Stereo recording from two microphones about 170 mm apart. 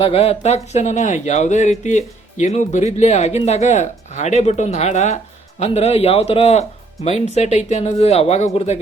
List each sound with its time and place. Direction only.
0.0 s speech: 35° left (ahead or behind)